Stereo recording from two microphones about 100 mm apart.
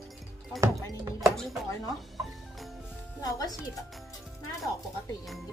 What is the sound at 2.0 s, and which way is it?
Music, centre (ahead or behind).